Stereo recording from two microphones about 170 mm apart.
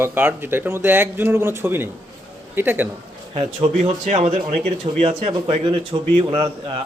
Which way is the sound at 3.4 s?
40° right (ahead or behind).